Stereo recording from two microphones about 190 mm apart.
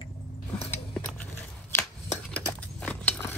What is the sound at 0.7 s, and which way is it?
Biting, 10° left (ahead or behind).